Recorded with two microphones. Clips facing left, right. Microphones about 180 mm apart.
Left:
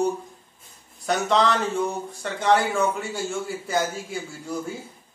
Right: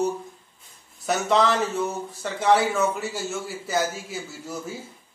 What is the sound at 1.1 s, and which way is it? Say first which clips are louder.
A man's voice: even; 5° right (ahead or behind).